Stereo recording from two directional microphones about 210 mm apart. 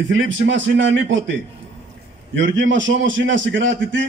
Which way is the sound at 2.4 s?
60° right (ahead or behind).